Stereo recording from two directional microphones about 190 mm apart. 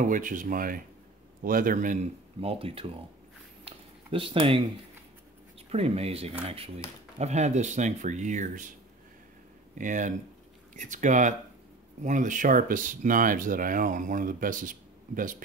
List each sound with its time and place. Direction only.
0.0 s speech: 45° right (ahead or behind)
3.6 s a sound: 30° right (ahead or behind)
5.7 s speech: 30° right (ahead or behind)
9.8 s speech: 40° right (ahead or behind)